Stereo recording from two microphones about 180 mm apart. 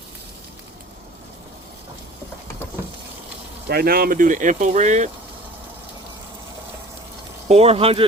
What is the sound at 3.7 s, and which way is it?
Speech, 55° right (ahead or behind).